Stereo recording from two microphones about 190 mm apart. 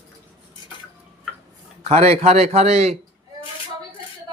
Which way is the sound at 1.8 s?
35° right (ahead or behind).